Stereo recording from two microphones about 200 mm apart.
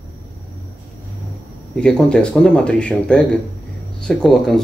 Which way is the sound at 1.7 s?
5° left (ahead or behind).